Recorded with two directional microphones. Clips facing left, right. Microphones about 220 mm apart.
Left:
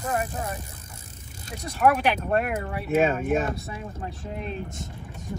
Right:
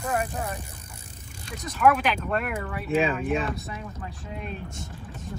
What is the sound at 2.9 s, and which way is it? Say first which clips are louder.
Speech: left 2 dB; 45° left (ahead or behind).